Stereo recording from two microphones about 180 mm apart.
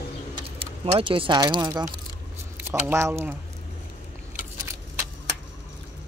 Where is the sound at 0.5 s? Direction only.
30° right (ahead or behind).